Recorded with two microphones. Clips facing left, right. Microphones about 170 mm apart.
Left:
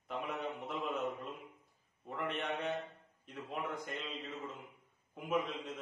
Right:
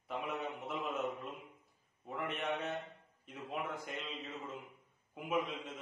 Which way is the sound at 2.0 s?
5° right (ahead or behind).